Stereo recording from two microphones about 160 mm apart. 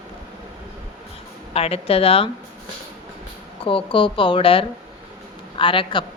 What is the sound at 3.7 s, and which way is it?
A woman's voice, 35° left (ahead or behind).